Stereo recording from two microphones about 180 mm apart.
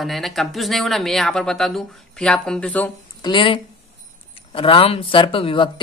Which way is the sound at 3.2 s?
30° left (ahead or behind).